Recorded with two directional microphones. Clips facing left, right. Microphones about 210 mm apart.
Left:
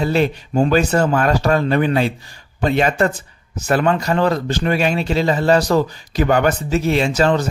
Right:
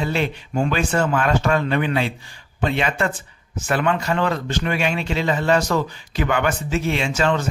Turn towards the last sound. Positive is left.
turn(degrees=35)  # may be behind; listen again after turning